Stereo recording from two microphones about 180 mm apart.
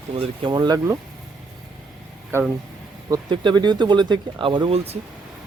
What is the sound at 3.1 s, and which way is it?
Speech, 25° right (ahead or behind).